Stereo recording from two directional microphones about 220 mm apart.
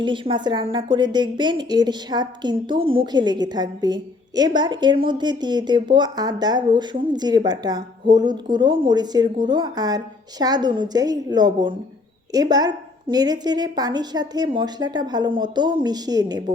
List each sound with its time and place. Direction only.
0.0 s a woman's voice: 20° right (ahead or behind)